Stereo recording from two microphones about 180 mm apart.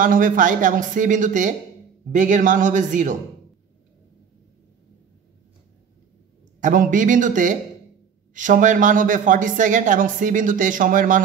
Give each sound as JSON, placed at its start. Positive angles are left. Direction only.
{"t": 0.0, "sound": "speech", "side_deg": -50}
{"t": 6.6, "sound": "speech", "side_deg": -50}